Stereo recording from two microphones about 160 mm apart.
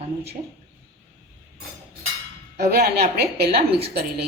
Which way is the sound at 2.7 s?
85° right.